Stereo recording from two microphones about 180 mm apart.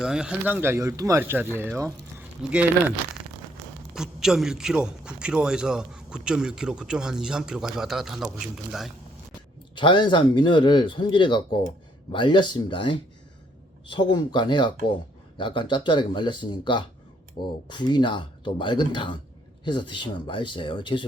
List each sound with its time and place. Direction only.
0.0 s a man's voice: 5° right (ahead or behind)
3.9 s a man's voice: 5° right (ahead or behind)
9.7 s speech: 25° left (ahead or behind)